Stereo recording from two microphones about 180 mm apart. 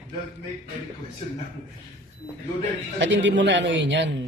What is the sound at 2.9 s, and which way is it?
Speech, 90° right.